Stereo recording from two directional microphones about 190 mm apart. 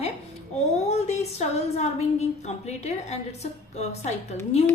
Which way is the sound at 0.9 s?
35° left (ahead or behind).